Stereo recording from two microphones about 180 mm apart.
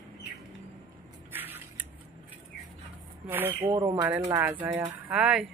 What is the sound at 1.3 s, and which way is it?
Squish, 10° right (ahead or behind).